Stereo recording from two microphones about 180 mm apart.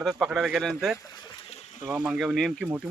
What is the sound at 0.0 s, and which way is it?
Speech, centre (ahead or behind).